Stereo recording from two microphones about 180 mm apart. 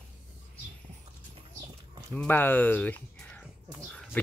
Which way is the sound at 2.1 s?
10° left (ahead or behind).